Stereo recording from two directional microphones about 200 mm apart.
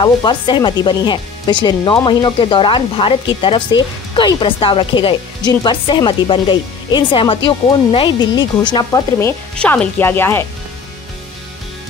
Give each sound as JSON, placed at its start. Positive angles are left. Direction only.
{"t": 0.0, "sound": "speech", "side_deg": 25}
{"t": 9.6, "sound": "speech", "side_deg": 5}